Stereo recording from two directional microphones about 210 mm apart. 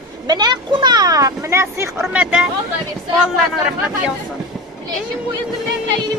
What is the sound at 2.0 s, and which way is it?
Speech, 5° right (ahead or behind).